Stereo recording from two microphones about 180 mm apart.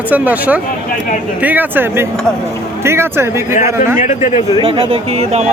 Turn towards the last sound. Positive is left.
turn(degrees=-35)  # may be behind; listen again after turning